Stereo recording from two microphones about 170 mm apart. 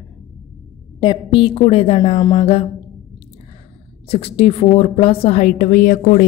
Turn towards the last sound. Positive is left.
turn(degrees=55)  # may be behind; listen again after turning